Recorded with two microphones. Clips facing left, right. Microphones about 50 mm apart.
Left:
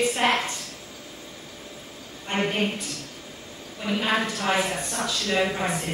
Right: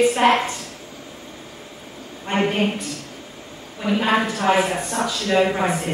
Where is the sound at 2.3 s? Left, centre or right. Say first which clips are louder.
Right 5 dB; right.